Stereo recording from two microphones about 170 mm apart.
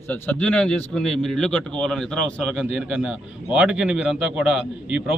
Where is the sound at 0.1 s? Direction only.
10° left (ahead or behind).